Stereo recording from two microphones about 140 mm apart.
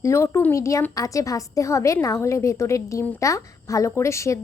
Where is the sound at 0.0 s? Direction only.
20° left (ahead or behind).